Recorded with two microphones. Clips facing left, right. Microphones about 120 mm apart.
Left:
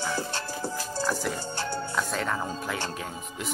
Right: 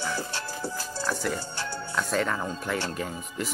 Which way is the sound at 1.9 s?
Centre (ahead or behind).